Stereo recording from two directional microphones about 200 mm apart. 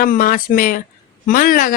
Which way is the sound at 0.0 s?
45° left (ahead or behind).